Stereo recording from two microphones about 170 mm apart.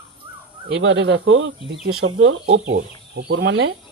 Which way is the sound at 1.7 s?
70° right (ahead or behind).